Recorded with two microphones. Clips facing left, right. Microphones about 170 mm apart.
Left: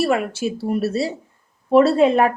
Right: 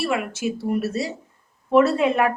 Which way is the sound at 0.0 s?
35° left (ahead or behind).